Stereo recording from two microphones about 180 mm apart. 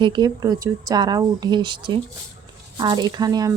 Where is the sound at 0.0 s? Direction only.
25° right (ahead or behind).